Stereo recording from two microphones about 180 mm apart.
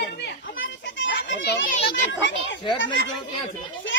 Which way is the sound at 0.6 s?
90° left.